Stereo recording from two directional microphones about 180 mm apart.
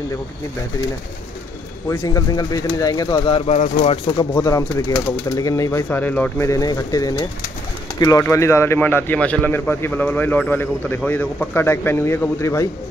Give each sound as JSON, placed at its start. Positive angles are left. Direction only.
{"t": 1.9, "sound": "speech", "side_deg": 20}
{"t": 4.2, "sound": "a man's voice", "side_deg": 20}